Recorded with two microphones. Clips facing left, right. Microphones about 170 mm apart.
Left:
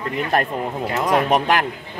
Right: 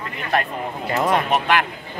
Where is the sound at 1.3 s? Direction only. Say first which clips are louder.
Left 2 dB; 40° left (ahead or behind).